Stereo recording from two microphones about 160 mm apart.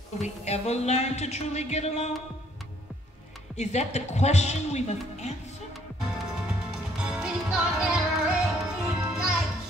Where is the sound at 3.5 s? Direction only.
45° left (ahead or behind).